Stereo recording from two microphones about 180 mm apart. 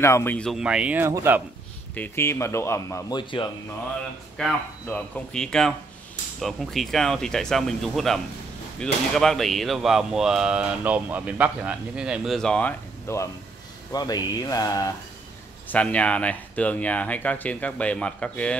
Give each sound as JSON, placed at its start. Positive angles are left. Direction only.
{"t": 0.0, "sound": "speech", "side_deg": 15}
{"t": 2.0, "sound": "speech", "side_deg": 15}
{"t": 4.4, "sound": "speech", "side_deg": 5}
{"t": 15.7, "sound": "speech", "side_deg": 5}